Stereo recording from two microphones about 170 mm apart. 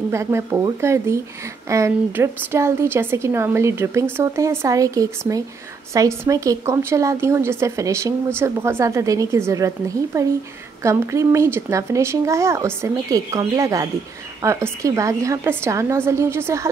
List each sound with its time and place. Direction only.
0.1 s a woman's voice: 15° right (ahead or behind)
10.8 s a woman's voice: 15° right (ahead or behind)